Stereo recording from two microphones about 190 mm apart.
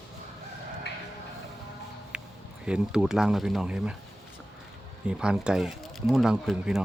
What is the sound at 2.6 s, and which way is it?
Speech, 5° right (ahead or behind).